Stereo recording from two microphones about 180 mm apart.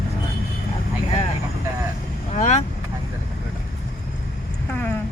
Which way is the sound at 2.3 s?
40° left (ahead or behind).